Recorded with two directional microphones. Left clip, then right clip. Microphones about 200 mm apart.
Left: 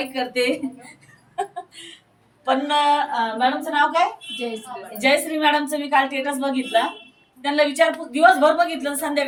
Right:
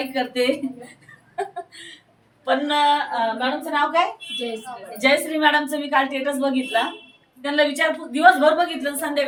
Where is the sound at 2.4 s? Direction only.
15° right (ahead or behind).